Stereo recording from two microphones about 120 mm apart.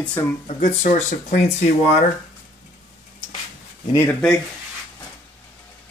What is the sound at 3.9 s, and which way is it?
Speech, 20° left (ahead or behind).